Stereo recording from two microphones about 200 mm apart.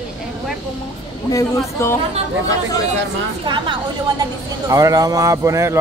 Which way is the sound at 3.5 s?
25° right (ahead or behind).